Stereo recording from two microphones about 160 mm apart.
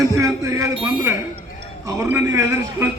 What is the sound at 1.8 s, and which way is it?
A man's voice, 15° right (ahead or behind).